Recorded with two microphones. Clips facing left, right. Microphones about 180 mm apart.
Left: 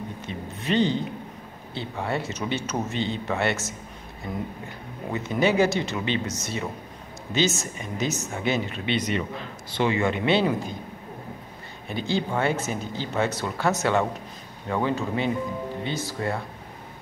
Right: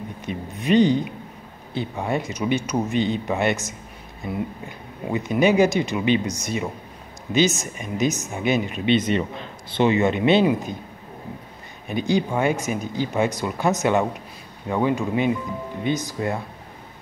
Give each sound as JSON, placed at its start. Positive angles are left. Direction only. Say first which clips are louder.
{"t": 0.2, "sound": "speech", "louder": "right 4 dB", "side_deg": -15}
{"t": 11.9, "sound": "speech", "louder": "right 4 dB", "side_deg": -15}